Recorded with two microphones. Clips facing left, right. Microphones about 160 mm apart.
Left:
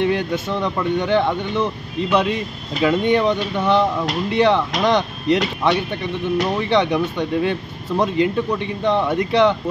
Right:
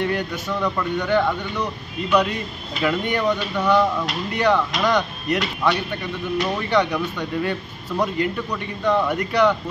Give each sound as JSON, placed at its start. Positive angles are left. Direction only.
{"t": 0.0, "sound": "speech", "side_deg": 20}